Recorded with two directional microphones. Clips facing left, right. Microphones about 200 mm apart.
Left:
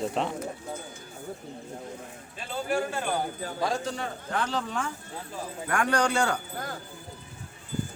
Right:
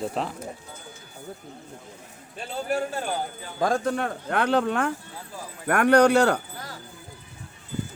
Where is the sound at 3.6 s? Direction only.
50° right (ahead or behind).